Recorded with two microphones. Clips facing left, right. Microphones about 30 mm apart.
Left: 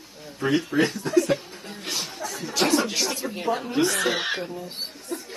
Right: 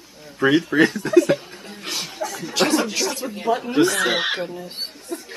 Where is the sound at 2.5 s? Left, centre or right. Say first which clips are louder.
Right 3 dB; right.